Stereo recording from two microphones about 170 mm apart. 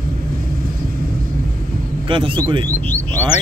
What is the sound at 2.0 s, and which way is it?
Speech, 30° right (ahead or behind).